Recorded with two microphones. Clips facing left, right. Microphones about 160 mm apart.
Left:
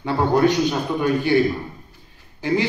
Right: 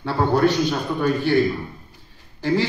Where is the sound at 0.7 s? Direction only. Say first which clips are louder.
Left 1 dB; 15° left (ahead or behind).